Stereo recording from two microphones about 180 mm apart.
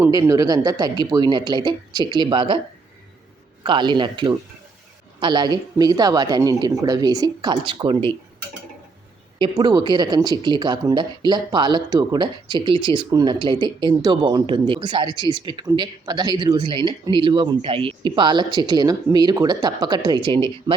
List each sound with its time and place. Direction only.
0.0 s speech: 20° right (ahead or behind)
3.6 s speech: 25° right (ahead or behind)
9.4 s speech: 25° right (ahead or behind)